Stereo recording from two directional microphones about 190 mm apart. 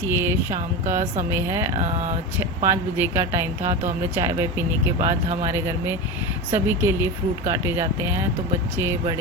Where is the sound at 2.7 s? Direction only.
10° right (ahead or behind).